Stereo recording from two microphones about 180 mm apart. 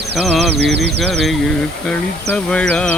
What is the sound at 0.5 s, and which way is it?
Speech, 70° right (ahead or behind).